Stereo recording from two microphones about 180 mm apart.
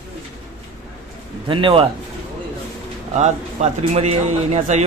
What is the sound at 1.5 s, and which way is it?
Speech, 30° right (ahead or behind).